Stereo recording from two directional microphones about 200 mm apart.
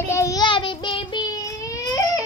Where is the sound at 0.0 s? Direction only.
15° left (ahead or behind).